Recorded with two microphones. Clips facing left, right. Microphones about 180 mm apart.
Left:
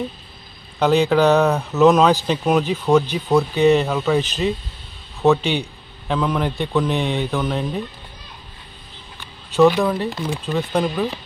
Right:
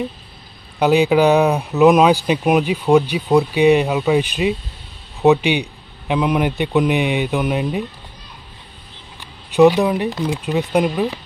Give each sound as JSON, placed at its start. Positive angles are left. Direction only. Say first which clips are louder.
{"t": 0.7, "sound": "speech", "louder": "right 2 dB", "side_deg": -10}
{"t": 9.5, "sound": "speech", "louder": "right 3 dB", "side_deg": -15}